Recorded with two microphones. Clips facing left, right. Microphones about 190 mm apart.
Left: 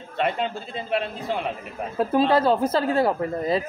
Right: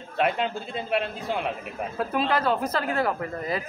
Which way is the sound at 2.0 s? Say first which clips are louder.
Left 6 dB; 25° left (ahead or behind).